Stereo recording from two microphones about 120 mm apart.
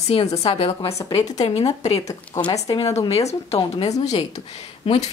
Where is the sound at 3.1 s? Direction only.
60° left (ahead or behind).